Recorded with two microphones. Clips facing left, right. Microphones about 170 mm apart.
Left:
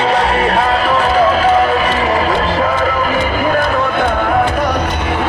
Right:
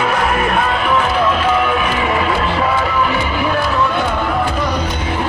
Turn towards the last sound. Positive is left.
turn(degrees=65)  # may be behind; listen again after turning